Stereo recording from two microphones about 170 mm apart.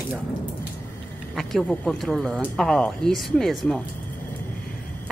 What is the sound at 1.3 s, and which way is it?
Speech, 5° left (ahead or behind).